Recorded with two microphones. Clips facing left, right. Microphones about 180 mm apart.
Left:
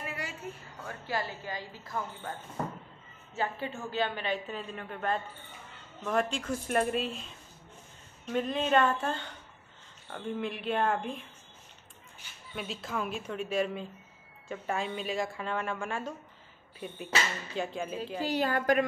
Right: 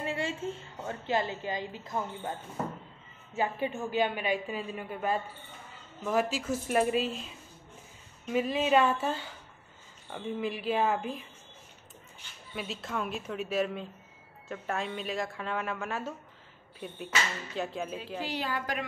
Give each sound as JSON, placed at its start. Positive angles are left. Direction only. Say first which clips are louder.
{"t": 0.0, "sound": "a woman's voice", "louder": "right 6 dB", "side_deg": -25}
{"t": 3.3, "sound": "a woman's voice", "louder": "right 3 dB", "side_deg": -15}
{"t": 12.5, "sound": "speech", "louder": "even", "side_deg": 0}
{"t": 17.6, "sound": "speech", "louder": "left 1 dB", "side_deg": 0}
{"t": 18.2, "sound": "a woman's voice", "louder": "left 7 dB", "side_deg": 45}